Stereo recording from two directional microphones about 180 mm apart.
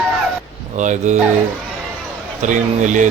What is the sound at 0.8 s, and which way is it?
Speech, 40° right (ahead or behind).